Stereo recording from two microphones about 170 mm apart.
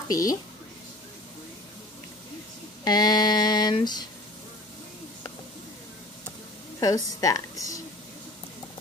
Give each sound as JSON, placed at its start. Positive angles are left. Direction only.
{"t": 0.1, "sound": "a woman's voice", "side_deg": 20}
{"t": 2.8, "sound": "a sound", "side_deg": 25}
{"t": 6.8, "sound": "a woman's voice", "side_deg": 20}